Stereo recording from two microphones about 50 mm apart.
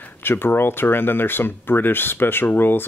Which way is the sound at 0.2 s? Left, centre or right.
Left.